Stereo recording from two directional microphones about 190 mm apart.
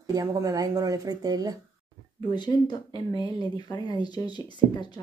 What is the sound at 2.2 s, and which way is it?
Speech, 25° left (ahead or behind).